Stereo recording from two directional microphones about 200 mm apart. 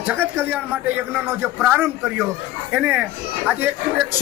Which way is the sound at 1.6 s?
10° right (ahead or behind).